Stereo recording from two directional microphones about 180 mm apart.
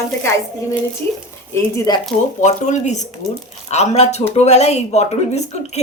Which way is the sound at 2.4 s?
40° left (ahead or behind).